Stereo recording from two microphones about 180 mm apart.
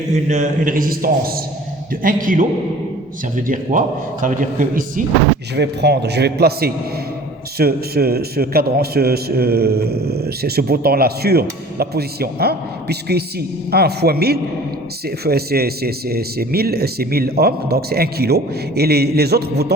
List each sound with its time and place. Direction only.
0.1 s a man's voice: 40° right (ahead or behind)
5.5 s a man's voice: 65° right (ahead or behind)